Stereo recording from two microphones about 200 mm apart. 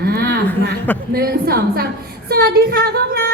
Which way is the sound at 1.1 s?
50° right (ahead or behind).